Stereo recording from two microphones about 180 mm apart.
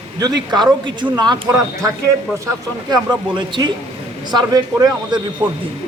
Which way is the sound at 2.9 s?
25° right (ahead or behind).